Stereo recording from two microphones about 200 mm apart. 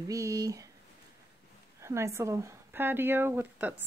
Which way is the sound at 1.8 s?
15° right (ahead or behind).